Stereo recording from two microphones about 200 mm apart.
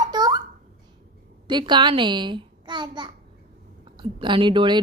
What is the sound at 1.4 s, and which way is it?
A child's voice, 25° right (ahead or behind).